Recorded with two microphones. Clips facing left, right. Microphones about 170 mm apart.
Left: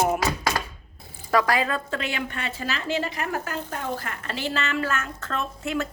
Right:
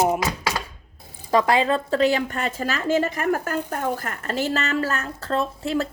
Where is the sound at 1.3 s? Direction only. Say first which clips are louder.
Right 3 dB; 25° right (ahead or behind).